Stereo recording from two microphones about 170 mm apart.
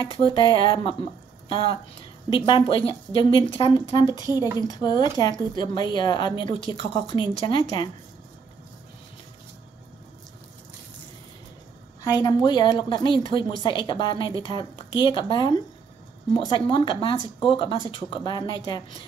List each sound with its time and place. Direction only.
0.1 s a woman's voice: 30° left (ahead or behind)
12.0 s speech: 25° left (ahead or behind)